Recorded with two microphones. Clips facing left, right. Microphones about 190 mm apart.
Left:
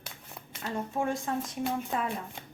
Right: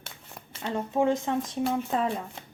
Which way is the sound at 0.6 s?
20° right (ahead or behind).